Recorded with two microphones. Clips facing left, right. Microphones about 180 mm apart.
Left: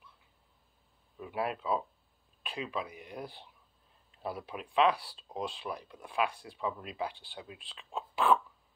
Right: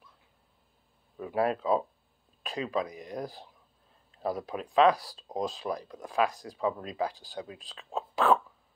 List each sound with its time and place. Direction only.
1.3 s speech: 40° right (ahead or behind)